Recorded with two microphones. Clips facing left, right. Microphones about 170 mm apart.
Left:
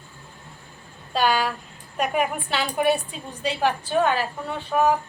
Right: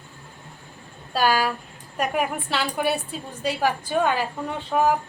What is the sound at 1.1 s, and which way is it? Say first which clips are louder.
A woman's voice: even; 5° right (ahead or behind).